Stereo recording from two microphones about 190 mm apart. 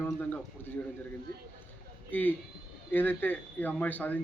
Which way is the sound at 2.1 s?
10° left (ahead or behind).